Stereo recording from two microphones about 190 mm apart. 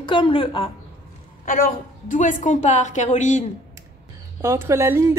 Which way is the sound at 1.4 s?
45° left (ahead or behind).